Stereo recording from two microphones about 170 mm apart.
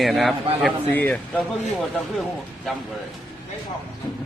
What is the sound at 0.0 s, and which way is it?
Speech, centre (ahead or behind).